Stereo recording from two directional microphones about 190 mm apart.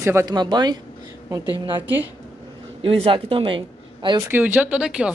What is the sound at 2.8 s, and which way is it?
A woman's voice, 30° right (ahead or behind).